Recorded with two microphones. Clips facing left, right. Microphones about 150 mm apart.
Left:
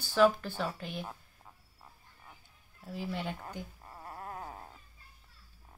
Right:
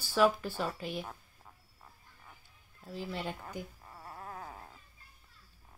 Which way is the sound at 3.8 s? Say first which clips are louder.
Left 2 dB; 25° left (ahead or behind).